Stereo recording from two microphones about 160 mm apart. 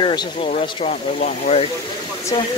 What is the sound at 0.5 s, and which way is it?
Speech, 45° left (ahead or behind).